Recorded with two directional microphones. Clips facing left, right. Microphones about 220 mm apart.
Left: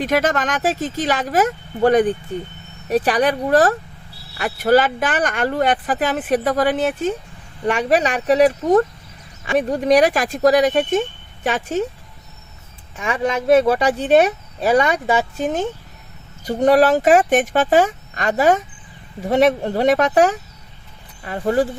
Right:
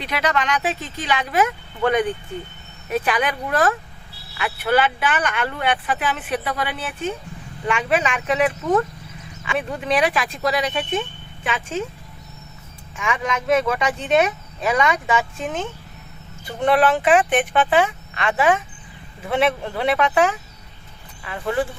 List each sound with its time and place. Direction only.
0.0 s speech: 45° left (ahead or behind)
13.0 s speech: 35° left (ahead or behind)